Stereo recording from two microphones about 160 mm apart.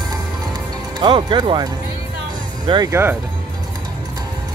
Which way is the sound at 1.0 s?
30° right (ahead or behind).